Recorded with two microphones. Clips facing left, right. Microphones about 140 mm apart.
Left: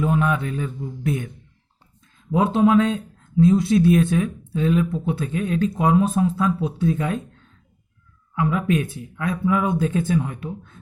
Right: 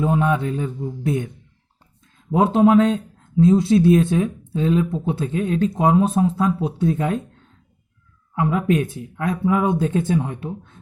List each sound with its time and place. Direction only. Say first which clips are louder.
0.0 s speech: right 2 dB; 25° right (ahead or behind)
2.3 s speech: right 2 dB; 35° right (ahead or behind)